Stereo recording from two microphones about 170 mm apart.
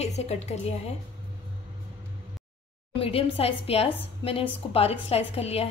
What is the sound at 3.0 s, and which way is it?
A woman's voice, 35° left (ahead or behind).